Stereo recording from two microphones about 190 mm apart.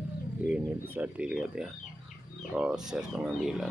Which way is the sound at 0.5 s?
10° right (ahead or behind).